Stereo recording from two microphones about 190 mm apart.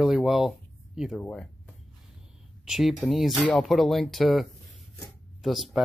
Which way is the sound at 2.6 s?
Centre (ahead or behind).